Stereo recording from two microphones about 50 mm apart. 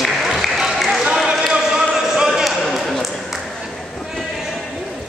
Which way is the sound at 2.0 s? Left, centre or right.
Centre.